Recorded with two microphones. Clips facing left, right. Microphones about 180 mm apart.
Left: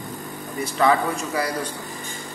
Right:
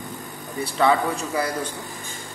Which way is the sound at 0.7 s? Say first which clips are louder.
Even; 25° right (ahead or behind).